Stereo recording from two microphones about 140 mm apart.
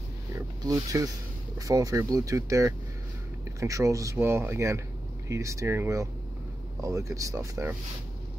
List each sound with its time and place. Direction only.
0.7 s speech: 25° right (ahead or behind)